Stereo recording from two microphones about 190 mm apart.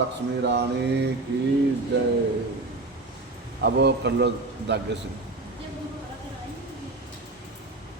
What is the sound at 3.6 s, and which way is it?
Mantra, 60° right (ahead or behind).